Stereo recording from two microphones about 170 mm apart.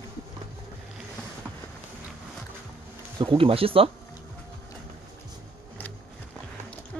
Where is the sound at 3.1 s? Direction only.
30° right (ahead or behind).